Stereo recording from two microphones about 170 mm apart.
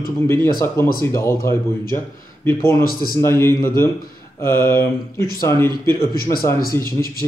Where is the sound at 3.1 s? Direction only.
15° left (ahead or behind).